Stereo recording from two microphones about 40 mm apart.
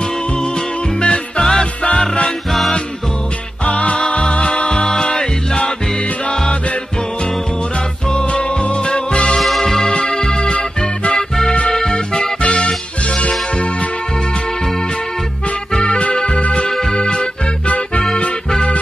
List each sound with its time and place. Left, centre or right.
0.4 s music: left
3.6 s music: left
8.1 s music: left
9.4 s music: centre; by 13.8 s left
15.7 s music: left
16.6 s music: centre
16.9 s music: left